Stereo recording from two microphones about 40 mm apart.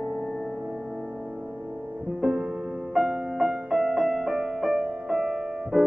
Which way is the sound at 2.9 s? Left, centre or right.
Centre.